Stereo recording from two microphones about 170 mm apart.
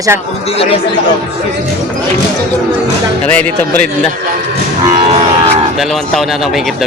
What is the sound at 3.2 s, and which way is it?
Speech, 10° left (ahead or behind).